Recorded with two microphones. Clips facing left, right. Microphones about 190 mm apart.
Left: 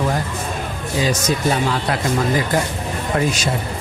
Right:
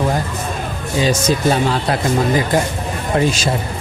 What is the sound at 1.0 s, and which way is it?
Speech, 30° right (ahead or behind).